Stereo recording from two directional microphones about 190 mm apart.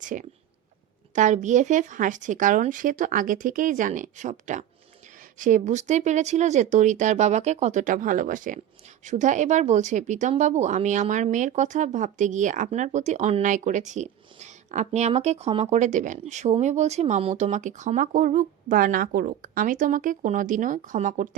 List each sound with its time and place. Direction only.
0.0 s speech: 45° right (ahead or behind)